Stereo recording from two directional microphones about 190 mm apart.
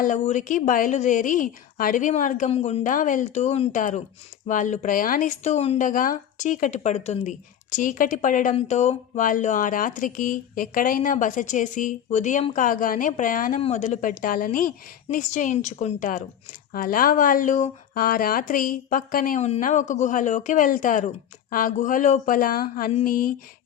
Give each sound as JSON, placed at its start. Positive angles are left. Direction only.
{"t": 0.0, "sound": "a woman's voice", "side_deg": 40}